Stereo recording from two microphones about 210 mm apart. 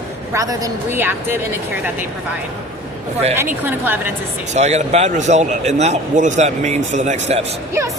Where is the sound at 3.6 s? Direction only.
10° right (ahead or behind).